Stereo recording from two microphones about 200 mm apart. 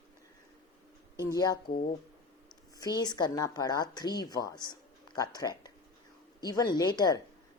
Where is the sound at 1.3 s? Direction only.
20° left (ahead or behind).